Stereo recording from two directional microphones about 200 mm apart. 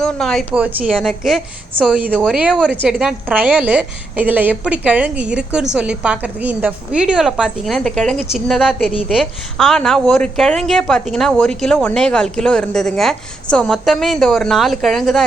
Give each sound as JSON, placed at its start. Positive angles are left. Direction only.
{"t": 0.0, "sound": "a woman's voice", "side_deg": 0}